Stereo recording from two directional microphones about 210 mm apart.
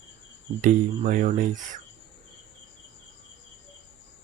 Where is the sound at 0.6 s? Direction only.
40° right (ahead or behind).